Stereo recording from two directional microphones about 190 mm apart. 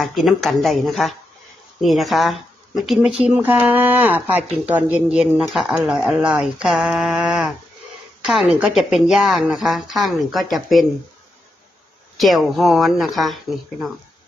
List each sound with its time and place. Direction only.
0.0 s speech: centre (ahead or behind)
12.2 s speech: centre (ahead or behind)